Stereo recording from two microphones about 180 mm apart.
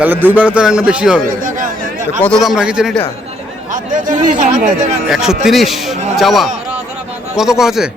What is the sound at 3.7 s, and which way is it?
Speech, 50° right (ahead or behind).